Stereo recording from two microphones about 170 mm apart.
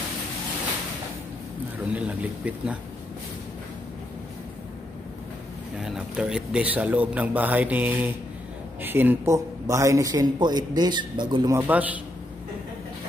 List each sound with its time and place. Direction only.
2.0 s a man's voice: 10° right (ahead or behind)
5.8 s a man's voice: 5° right (ahead or behind)